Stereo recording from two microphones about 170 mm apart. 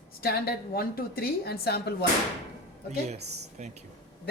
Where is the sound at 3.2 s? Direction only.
75° right (ahead or behind).